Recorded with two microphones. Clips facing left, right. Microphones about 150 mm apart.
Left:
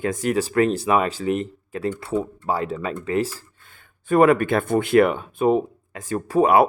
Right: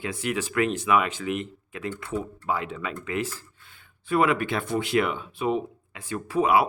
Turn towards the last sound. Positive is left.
turn(degrees=45)  # may be behind; listen again after turning